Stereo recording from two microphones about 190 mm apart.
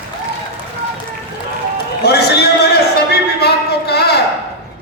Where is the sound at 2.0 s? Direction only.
60° left (ahead or behind).